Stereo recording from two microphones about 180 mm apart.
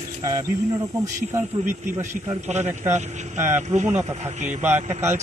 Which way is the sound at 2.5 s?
40° right (ahead or behind).